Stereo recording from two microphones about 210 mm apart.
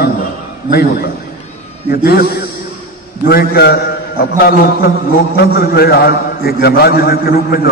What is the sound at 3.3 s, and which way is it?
A man's voice, 50° left (ahead or behind).